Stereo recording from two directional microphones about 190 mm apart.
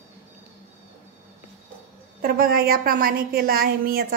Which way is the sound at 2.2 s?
50° right (ahead or behind).